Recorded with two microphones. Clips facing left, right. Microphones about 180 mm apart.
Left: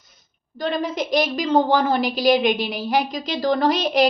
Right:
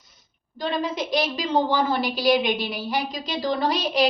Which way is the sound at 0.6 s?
45° left (ahead or behind).